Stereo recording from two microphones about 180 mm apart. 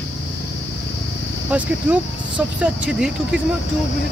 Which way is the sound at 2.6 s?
5° right (ahead or behind).